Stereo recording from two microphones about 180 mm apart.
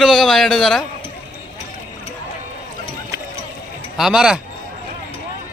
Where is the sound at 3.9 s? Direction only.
5° right (ahead or behind).